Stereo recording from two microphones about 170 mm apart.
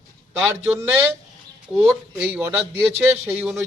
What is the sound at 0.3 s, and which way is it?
Speech, 10° right (ahead or behind).